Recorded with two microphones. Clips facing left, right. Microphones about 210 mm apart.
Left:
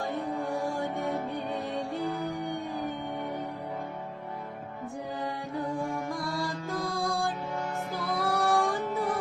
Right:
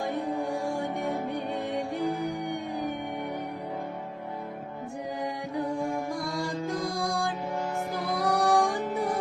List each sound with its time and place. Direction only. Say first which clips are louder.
0.3 s music: right 2 dB; 15° right (ahead or behind)
6.8 s music: right 1 dB; 15° right (ahead or behind)